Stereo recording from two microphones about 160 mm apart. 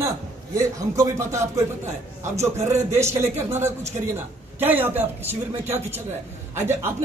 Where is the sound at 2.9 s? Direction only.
15° right (ahead or behind).